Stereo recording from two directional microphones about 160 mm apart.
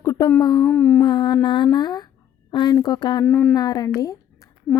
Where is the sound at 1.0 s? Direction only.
30° left (ahead or behind).